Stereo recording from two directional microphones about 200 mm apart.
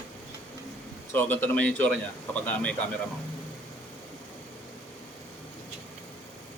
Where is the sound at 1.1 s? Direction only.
10° left (ahead or behind).